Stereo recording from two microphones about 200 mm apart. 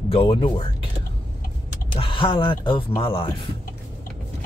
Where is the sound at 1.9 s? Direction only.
25° left (ahead or behind).